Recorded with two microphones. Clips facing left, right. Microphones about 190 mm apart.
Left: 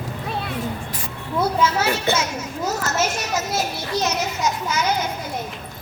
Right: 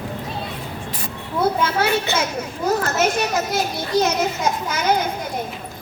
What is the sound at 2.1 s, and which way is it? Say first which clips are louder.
Speech: left 2 dB; 55° left (ahead or behind).